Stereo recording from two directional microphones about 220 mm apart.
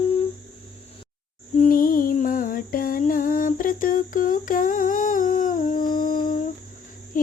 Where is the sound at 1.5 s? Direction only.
40° left (ahead or behind).